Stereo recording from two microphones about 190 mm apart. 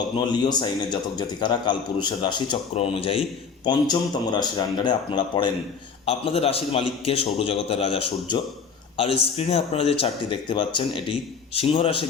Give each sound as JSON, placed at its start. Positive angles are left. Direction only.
{"t": 0.3, "sound": "a man's voice", "side_deg": 20}